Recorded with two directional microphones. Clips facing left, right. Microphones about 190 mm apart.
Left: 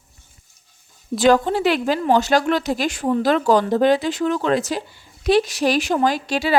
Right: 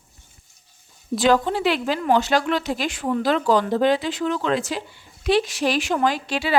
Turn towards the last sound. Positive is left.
turn(degrees=40)  # may be behind; listen again after turning